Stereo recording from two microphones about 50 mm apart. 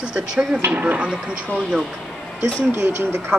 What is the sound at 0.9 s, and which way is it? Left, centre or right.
Speech, right.